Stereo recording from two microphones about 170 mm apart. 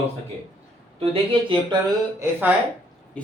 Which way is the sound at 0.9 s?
35° right (ahead or behind).